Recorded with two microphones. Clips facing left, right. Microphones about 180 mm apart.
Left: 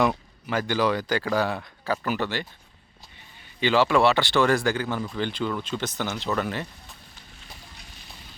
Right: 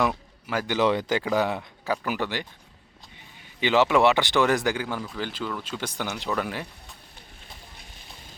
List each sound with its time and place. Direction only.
0.0 s a man's voice: 5° right (ahead or behind)
0.8 s speech: 25° right (ahead or behind)
3.6 s speech: 15° right (ahead or behind)